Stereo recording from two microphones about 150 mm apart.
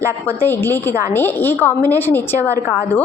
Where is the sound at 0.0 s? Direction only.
15° left (ahead or behind).